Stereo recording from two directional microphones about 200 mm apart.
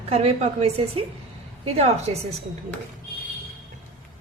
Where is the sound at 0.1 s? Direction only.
30° right (ahead or behind).